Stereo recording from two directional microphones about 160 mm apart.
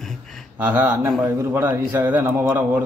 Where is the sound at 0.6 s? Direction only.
15° right (ahead or behind).